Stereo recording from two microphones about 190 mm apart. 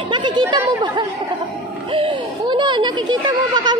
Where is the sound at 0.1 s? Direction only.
25° right (ahead or behind).